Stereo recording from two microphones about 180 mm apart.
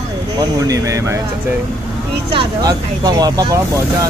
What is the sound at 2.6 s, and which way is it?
Speech, 20° right (ahead or behind).